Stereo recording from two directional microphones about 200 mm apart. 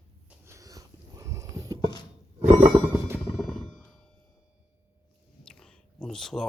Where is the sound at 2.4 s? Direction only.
35° right (ahead or behind).